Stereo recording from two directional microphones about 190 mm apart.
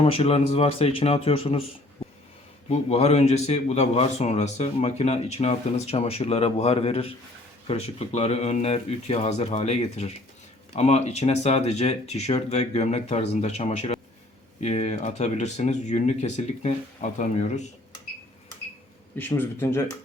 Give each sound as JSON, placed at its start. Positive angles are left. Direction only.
{"t": 0.0, "sound": "a man's voice", "side_deg": 30}
{"t": 2.6, "sound": "a man's voice", "side_deg": 35}
{"t": 19.1, "sound": "a man's voice", "side_deg": 10}